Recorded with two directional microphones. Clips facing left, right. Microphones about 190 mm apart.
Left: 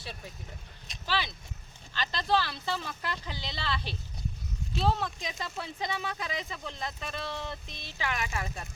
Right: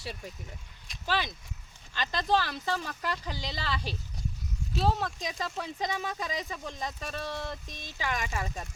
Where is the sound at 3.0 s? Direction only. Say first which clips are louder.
Right 3 dB; 40° right (ahead or behind).